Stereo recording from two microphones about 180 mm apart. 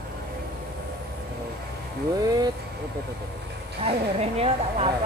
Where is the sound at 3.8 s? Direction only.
35° right (ahead or behind).